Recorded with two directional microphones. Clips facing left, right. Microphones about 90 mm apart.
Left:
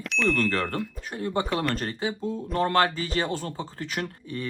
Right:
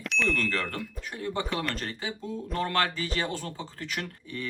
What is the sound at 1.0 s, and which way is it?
Speech, 35° left (ahead or behind).